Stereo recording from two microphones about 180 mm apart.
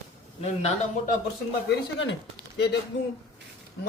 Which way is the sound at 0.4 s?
35° left (ahead or behind).